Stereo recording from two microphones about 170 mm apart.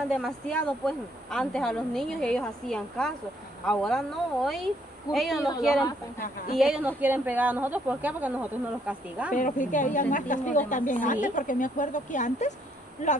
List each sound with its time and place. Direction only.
0.1 s a woman's voice: 5° left (ahead or behind)
9.3 s a woman's voice: 50° left (ahead or behind)